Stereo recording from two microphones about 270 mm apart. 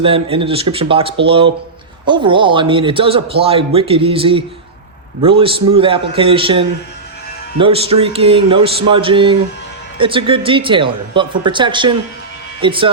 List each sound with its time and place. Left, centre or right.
0.0 s a man's voice: centre